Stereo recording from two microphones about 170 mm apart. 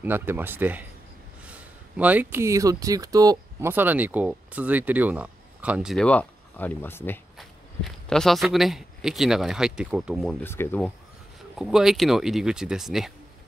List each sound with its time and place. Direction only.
0.0 s speech: 10° right (ahead or behind)
6.0 s speech: 10° left (ahead or behind)
7.3 s speech: centre (ahead or behind)
10.4 s speech: 15° left (ahead or behind)
11.5 s speech: centre (ahead or behind)